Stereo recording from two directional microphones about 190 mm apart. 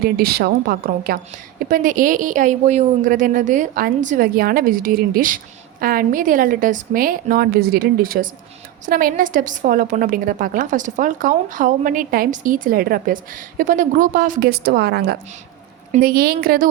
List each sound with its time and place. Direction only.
0.0 s a woman's voice: 55° right (ahead or behind)